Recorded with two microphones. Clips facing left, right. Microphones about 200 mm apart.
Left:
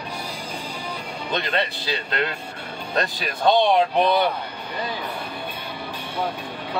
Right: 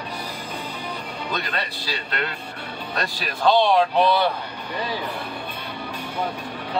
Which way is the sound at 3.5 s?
20° left (ahead or behind).